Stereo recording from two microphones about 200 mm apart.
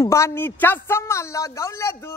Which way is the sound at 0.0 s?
15° left (ahead or behind).